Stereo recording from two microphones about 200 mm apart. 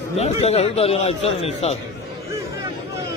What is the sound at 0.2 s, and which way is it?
A man's voice, 30° left (ahead or behind).